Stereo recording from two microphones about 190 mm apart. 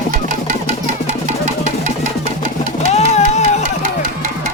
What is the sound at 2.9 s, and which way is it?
Music, 35° left (ahead or behind).